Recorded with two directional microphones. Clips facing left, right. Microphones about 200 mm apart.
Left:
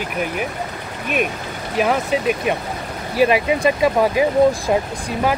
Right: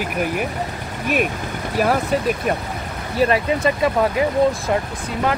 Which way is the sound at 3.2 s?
20° left (ahead or behind).